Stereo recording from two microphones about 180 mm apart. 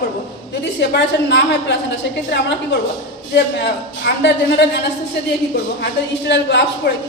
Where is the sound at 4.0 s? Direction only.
65° left (ahead or behind).